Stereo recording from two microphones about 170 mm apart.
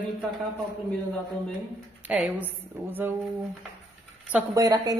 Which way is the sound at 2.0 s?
5° right (ahead or behind).